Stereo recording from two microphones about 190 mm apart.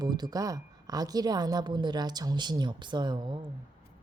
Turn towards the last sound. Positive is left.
turn(degrees=-25)  # may be behind; listen again after turning